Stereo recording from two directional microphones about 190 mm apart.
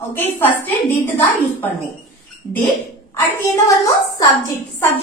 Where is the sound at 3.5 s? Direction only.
15° left (ahead or behind).